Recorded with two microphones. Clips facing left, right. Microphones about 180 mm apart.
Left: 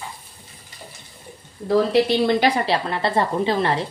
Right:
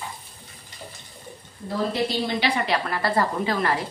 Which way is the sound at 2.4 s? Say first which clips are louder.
Left 4 dB; 35° left (ahead or behind).